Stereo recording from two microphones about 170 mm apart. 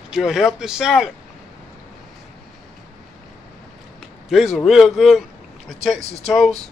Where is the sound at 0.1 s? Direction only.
5° right (ahead or behind).